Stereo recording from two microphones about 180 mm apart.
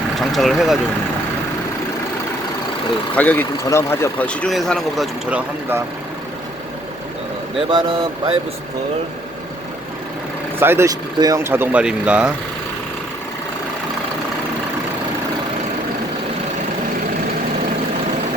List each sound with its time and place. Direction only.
0.2 s speech: centre (ahead or behind)
3.2 s speech: 10° left (ahead or behind); by 5.8 s 10° right (ahead or behind)
7.7 s speech: 30° right (ahead or behind)
10.6 s speech: 15° right (ahead or behind)